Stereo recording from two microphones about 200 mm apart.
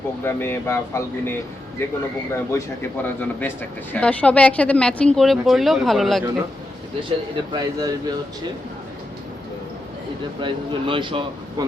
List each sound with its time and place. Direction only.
0.3 s speech: 10° left (ahead or behind)
7.5 s speech: 20° right (ahead or behind)
10.4 s speech: 25° right (ahead or behind)